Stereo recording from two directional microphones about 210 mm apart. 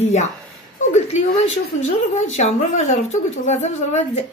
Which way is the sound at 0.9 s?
35° left (ahead or behind).